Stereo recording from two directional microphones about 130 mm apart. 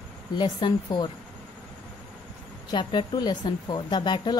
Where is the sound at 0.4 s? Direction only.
35° left (ahead or behind).